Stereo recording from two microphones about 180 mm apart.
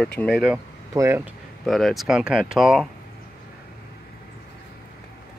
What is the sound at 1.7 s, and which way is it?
Speech, centre (ahead or behind).